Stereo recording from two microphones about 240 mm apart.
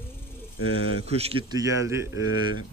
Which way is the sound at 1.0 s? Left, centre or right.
Right.